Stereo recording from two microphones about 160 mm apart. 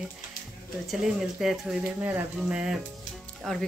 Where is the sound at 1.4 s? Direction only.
5° right (ahead or behind).